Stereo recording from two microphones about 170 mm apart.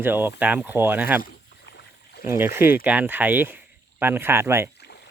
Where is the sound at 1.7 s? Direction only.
80° left.